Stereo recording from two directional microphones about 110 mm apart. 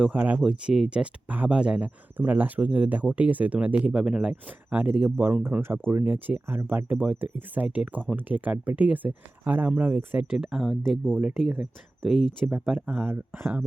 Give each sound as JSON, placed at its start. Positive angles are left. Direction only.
{"t": 0.1, "sound": "speech", "side_deg": -15}
{"t": 10.2, "sound": "speech", "side_deg": -5}
{"t": 12.5, "sound": "speech", "side_deg": -20}